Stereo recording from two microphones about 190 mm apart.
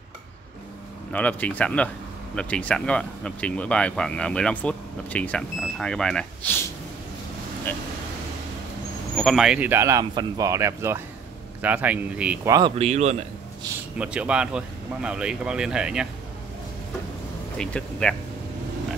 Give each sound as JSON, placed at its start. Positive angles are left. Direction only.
{"t": 1.1, "sound": "speech", "side_deg": 10}
{"t": 9.1, "sound": "speech", "side_deg": 0}
{"t": 12.5, "sound": "speech", "side_deg": -30}
{"t": 13.9, "sound": "speech", "side_deg": -5}
{"t": 17.6, "sound": "speech", "side_deg": 5}